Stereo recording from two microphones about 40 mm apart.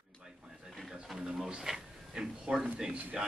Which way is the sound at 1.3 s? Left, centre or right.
Centre.